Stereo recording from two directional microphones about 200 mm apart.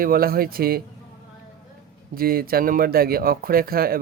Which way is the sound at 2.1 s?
50° right (ahead or behind).